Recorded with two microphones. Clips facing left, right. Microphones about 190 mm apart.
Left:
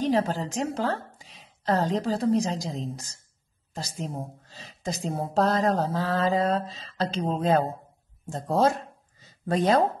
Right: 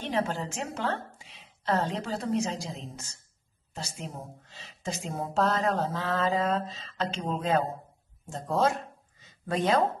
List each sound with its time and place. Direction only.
0.0 s a woman's voice: 35° left (ahead or behind)